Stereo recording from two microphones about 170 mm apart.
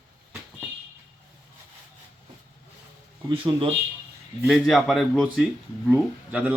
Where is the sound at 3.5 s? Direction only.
25° right (ahead or behind).